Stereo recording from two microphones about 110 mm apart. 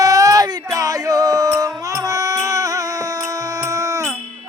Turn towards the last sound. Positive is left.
turn(degrees=-30)  # may be behind; listen again after turning